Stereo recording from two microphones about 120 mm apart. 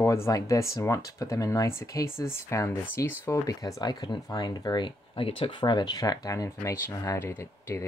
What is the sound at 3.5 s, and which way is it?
Speech, 30° left (ahead or behind).